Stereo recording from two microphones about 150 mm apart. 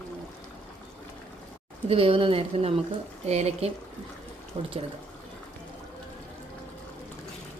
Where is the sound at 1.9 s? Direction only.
40° right (ahead or behind).